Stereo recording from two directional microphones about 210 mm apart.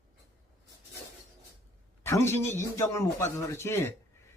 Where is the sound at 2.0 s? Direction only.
10° left (ahead or behind).